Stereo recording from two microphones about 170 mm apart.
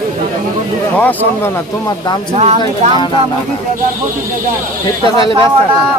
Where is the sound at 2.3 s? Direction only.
40° right (ahead or behind).